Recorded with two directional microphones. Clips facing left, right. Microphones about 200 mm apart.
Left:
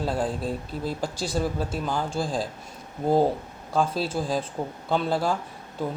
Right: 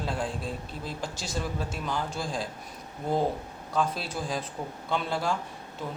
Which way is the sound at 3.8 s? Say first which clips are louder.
Left 5 dB; 30° left (ahead or behind).